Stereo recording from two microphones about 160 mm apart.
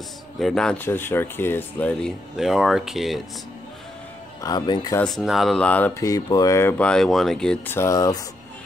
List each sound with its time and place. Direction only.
0.4 s speech: 5° left (ahead or behind)
4.4 s speech: 25° left (ahead or behind)
5.0 s speech: centre (ahead or behind); by 6.7 s 20° left (ahead or behind)
6.8 s speech: 5° left (ahead or behind)
7.7 s speech: 20° left (ahead or behind)